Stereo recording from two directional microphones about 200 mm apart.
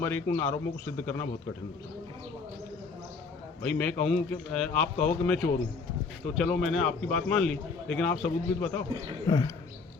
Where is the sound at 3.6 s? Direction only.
5° left (ahead or behind).